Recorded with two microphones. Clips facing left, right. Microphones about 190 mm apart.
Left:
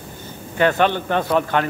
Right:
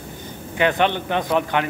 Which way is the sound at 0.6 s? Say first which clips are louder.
Left 2 dB; 20° right (ahead or behind).